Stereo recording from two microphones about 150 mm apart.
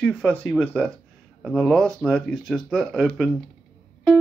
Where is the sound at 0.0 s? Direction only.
10° left (ahead or behind).